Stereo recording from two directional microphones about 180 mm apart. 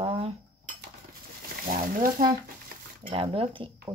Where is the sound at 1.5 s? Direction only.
50° right (ahead or behind).